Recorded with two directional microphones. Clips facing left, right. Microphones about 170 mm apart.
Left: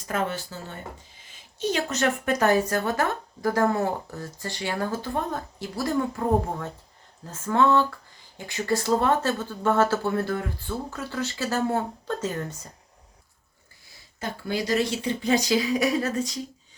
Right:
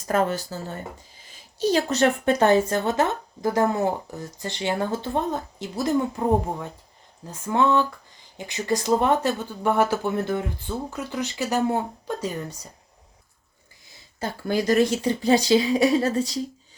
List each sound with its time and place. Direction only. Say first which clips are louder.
0.1 s speech: right 5 dB; 40° right (ahead or behind); by 12.6 s 15° right (ahead or behind)
14.2 s speech: right 4 dB; 45° right (ahead or behind)